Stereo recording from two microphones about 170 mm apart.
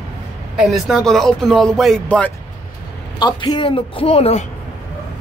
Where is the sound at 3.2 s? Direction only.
25° left (ahead or behind).